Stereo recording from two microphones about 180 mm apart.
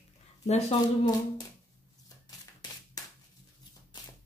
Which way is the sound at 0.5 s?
35° left (ahead or behind).